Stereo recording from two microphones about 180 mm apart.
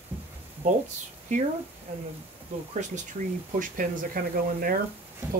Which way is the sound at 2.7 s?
45° right (ahead or behind).